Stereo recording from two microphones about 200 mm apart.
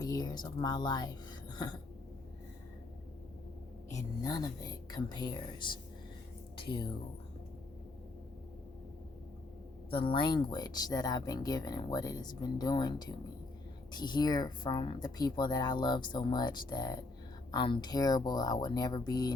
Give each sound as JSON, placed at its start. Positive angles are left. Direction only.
{"t": 0.0, "sound": "speech", "side_deg": 20}
{"t": 3.9, "sound": "speech", "side_deg": 20}
{"t": 9.9, "sound": "speech", "side_deg": 25}